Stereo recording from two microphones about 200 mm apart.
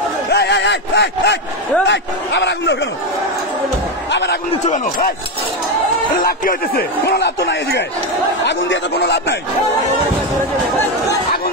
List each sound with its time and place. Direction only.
0.3 s a sound: 55° left (ahead or behind)
1.9 s a man's voice: 60° left (ahead or behind)
4.1 s a man's voice: 60° left (ahead or behind)
6.2 s a man's voice: 50° left (ahead or behind)